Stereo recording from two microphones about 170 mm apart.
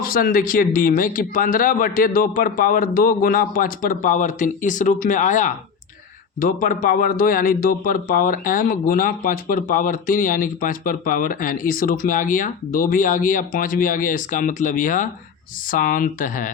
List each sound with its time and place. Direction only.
0.0 s a man's voice: 60° left (ahead or behind)